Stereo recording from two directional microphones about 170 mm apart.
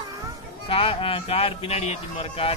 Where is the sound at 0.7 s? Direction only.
35° left (ahead or behind).